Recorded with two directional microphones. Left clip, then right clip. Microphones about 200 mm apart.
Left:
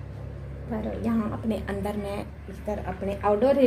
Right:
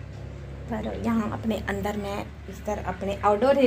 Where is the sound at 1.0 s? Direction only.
5° right (ahead or behind).